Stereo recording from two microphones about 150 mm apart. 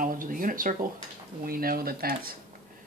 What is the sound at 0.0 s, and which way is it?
Speech, 65° right (ahead or behind).